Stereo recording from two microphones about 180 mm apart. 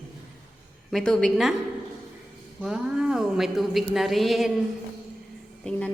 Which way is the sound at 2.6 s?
5° right (ahead or behind).